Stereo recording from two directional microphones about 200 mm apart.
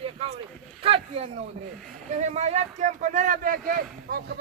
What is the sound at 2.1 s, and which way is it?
A man's voice, 35° right (ahead or behind).